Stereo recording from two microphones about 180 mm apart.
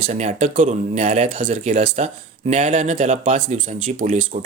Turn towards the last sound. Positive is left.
turn(degrees=-45)  # may be behind; listen again after turning